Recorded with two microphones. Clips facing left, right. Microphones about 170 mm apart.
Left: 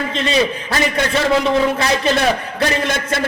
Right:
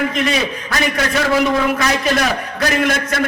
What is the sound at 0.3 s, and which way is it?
A man's voice, 30° left (ahead or behind).